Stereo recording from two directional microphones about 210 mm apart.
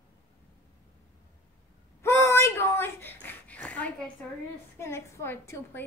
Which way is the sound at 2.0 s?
15° left (ahead or behind).